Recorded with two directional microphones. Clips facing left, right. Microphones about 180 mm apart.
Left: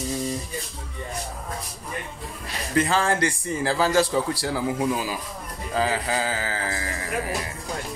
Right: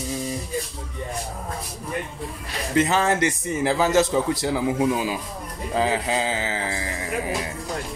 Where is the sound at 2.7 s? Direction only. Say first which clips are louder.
Right 2 dB; 20° right (ahead or behind).